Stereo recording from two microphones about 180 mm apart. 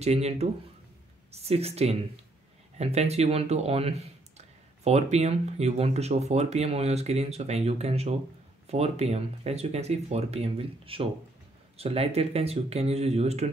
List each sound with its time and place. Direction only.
0.0 s speech: 35° right (ahead or behind)